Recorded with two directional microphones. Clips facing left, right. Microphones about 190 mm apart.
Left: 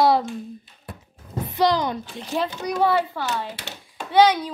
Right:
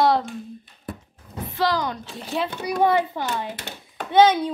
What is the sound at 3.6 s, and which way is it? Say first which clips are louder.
Hands: right 2 dB; 50° right (ahead or behind).